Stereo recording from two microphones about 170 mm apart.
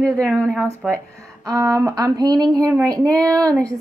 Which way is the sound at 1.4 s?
20° right (ahead or behind).